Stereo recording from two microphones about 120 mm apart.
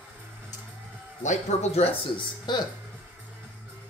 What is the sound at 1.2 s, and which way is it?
Speech, 80° left.